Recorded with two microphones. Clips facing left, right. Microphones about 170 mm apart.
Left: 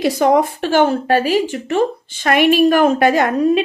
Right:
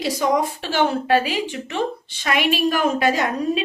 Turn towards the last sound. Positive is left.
turn(degrees=55)  # may be behind; listen again after turning